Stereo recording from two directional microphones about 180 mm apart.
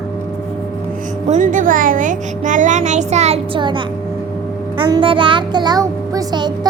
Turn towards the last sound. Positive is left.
turn(degrees=-25)  # may be behind; listen again after turning